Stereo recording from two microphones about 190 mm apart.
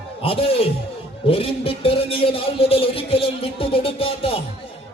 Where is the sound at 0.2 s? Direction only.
30° left (ahead or behind).